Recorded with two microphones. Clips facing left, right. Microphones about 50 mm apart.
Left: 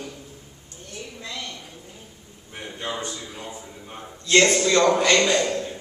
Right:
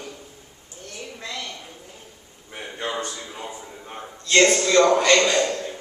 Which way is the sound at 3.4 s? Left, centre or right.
Centre.